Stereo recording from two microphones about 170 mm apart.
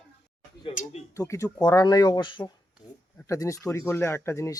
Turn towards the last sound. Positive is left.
turn(degrees=15)  # may be behind; listen again after turning